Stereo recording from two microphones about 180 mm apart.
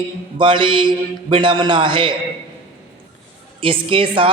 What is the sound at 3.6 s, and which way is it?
Speech, 30° right (ahead or behind).